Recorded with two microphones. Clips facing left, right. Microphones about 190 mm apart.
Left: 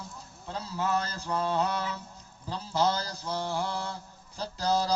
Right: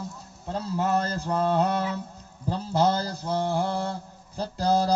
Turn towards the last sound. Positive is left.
turn(degrees=-55)  # may be behind; listen again after turning